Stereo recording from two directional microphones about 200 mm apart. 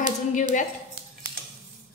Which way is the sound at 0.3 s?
40° left (ahead or behind).